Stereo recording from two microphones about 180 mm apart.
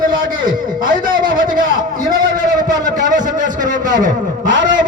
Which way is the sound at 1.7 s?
20° right (ahead or behind).